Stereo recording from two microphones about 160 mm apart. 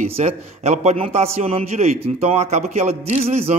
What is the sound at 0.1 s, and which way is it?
A man's voice, 45° right (ahead or behind).